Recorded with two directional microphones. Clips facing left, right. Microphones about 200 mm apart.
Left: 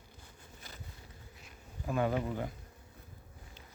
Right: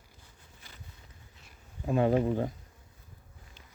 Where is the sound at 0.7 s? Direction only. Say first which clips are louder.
Left 3 dB; 40° left (ahead or behind).